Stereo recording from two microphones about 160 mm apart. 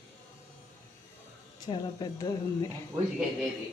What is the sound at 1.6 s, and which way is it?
Speech, 25° left (ahead or behind).